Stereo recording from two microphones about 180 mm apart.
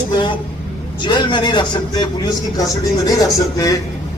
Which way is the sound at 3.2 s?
20° left (ahead or behind).